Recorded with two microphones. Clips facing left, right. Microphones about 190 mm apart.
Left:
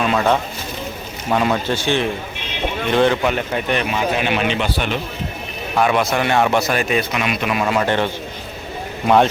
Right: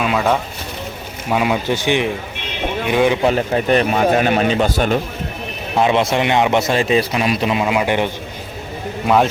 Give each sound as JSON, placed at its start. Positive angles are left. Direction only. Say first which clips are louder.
{"t": 0.0, "sound": "speech", "louder": "even", "side_deg": -5}
{"t": 3.2, "sound": "speech", "louder": "right 4 dB", "side_deg": -35}
{"t": 5.7, "sound": "a man's voice", "louder": "right 2 dB", "side_deg": -25}
{"t": 7.6, "sound": "speech", "louder": "right 1 dB", "side_deg": -15}
{"t": 9.0, "sound": "a man's voice", "louder": "left 1 dB", "side_deg": 0}